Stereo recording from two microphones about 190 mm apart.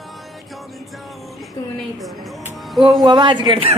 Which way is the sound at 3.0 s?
25° right (ahead or behind).